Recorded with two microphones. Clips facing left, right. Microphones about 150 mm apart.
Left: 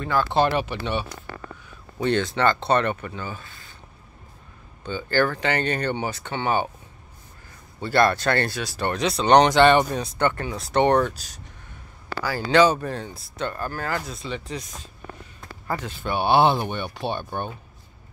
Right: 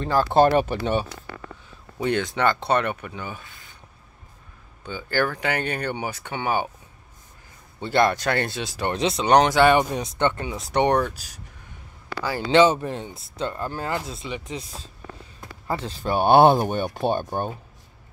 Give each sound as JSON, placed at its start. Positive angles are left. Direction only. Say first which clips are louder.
{"t": 0.0, "sound": "speech", "louder": "right 3 dB", "side_deg": -35}
{"t": 2.0, "sound": "speech", "louder": "left 1 dB", "side_deg": -10}
{"t": 4.8, "sound": "speech", "louder": "left 2 dB", "side_deg": -10}
{"t": 7.8, "sound": "speech", "louder": "left 1 dB", "side_deg": -15}
{"t": 9.2, "sound": "speech", "louder": "left 2 dB", "side_deg": -5}
{"t": 12.2, "sound": "speech", "louder": "right 1 dB", "side_deg": -25}